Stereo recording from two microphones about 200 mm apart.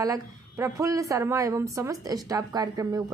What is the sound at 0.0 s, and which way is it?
A woman's voice, 15° right (ahead or behind).